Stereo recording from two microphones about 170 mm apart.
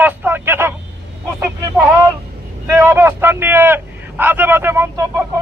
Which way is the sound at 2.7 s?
15° right (ahead or behind).